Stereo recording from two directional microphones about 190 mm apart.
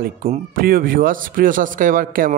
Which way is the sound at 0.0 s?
45° right (ahead or behind).